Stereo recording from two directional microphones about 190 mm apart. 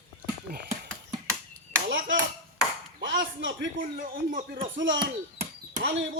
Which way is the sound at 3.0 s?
70° right (ahead or behind).